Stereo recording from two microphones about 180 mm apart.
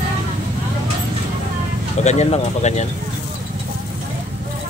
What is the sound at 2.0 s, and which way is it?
Speech, 40° left (ahead or behind).